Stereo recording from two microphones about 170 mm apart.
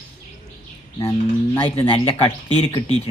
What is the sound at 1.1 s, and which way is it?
Speech, 30° left (ahead or behind).